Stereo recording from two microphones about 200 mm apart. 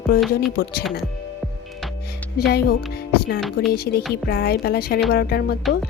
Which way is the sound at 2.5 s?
50° left (ahead or behind).